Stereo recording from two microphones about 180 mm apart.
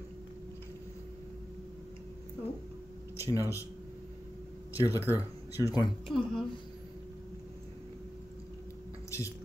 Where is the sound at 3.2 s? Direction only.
15° left (ahead or behind).